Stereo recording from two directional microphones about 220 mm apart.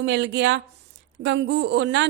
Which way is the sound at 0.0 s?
50° right (ahead or behind).